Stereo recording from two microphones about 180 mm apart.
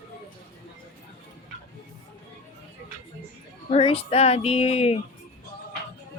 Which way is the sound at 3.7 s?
35° left (ahead or behind).